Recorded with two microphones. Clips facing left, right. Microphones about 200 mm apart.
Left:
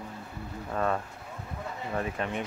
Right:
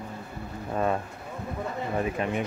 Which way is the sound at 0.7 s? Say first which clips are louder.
Right 2 dB; 15° right (ahead or behind).